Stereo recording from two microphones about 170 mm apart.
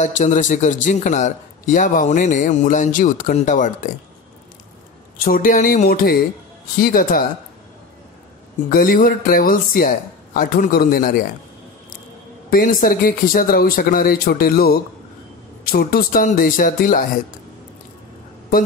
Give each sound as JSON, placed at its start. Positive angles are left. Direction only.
{"t": 0.0, "sound": "speech", "side_deg": 45}
{"t": 5.2, "sound": "speech", "side_deg": 55}
{"t": 8.6, "sound": "speech", "side_deg": 55}
{"t": 12.4, "sound": "speech", "side_deg": 55}